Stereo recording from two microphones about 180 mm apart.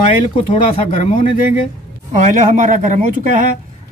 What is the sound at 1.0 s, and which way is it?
Speech, 45° left (ahead or behind).